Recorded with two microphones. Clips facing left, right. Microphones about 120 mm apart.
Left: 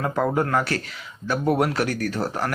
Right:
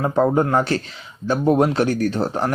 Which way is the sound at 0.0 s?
25° right (ahead or behind).